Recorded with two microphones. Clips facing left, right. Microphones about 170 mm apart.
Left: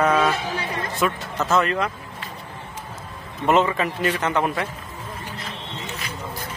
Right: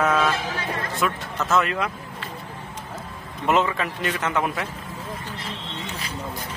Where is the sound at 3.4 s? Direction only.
Centre (ahead or behind).